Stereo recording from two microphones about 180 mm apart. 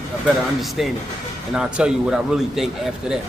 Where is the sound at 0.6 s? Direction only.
Centre (ahead or behind).